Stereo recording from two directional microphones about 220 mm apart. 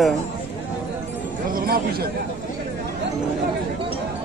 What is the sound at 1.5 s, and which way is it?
Speech, 45° right (ahead or behind).